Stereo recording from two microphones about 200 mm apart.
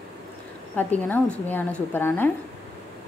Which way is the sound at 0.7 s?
10° left (ahead or behind).